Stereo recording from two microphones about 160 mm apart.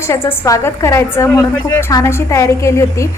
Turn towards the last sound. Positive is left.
turn(degrees=20)  # may be behind; listen again after turning